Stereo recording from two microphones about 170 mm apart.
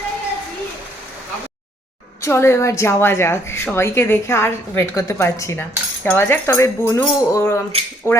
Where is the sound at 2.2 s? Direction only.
15° left (ahead or behind).